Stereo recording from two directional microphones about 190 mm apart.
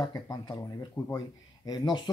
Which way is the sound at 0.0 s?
20° left (ahead or behind).